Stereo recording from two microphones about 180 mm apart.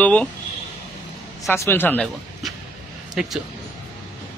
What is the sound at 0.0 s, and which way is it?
Speech, 5° left (ahead or behind).